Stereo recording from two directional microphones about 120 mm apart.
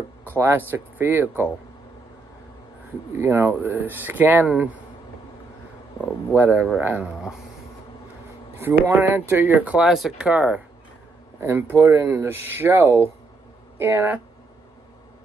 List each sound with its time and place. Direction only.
0.4 s speech: 20° right (ahead or behind)
3.2 s speech: 20° right (ahead or behind)
6.3 s speech: 15° right (ahead or behind)
8.8 s speech: 20° right (ahead or behind)